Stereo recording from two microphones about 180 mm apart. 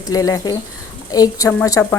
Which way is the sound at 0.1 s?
20° left (ahead or behind).